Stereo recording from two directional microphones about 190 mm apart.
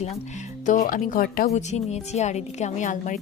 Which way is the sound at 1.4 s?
35° left (ahead or behind).